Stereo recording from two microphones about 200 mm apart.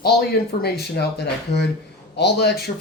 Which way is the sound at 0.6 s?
55° left (ahead or behind).